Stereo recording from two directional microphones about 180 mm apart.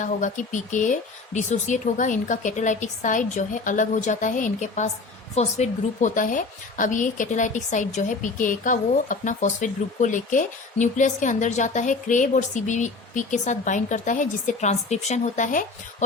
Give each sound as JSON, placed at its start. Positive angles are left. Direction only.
{"t": 0.0, "sound": "a woman's voice", "side_deg": 45}